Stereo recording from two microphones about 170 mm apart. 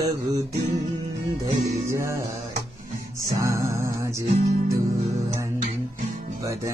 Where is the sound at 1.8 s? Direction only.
15° right (ahead or behind).